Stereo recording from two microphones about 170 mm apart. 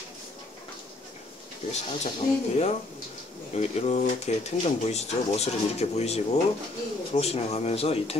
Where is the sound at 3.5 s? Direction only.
40° left (ahead or behind).